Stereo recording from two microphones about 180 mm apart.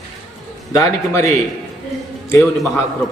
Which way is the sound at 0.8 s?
15° left (ahead or behind).